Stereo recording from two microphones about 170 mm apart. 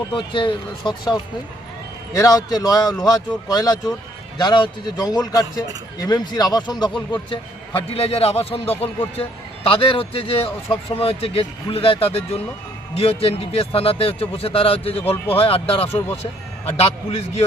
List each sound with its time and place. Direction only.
0.1 s a man's voice: 30° left (ahead or behind)
14.9 s speech: 15° left (ahead or behind)
15.3 s speech: 35° left (ahead or behind)